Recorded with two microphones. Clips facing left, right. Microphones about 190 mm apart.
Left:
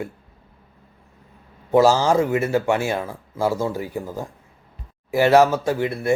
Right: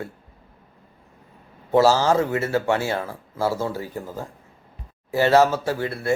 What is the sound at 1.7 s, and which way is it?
Speech, 15° left (ahead or behind).